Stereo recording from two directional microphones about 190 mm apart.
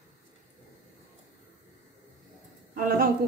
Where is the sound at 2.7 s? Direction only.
50° right (ahead or behind).